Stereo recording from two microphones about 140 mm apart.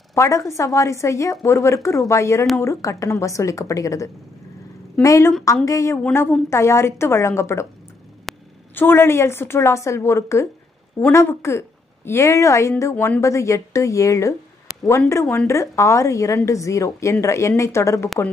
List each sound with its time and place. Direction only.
0.1 s a woman's voice: 20° left (ahead or behind)
8.3 s a sound: centre (ahead or behind)
8.7 s a woman's voice: 15° left (ahead or behind)